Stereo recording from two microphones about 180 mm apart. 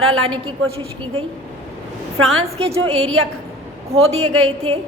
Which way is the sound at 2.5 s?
35° right (ahead or behind).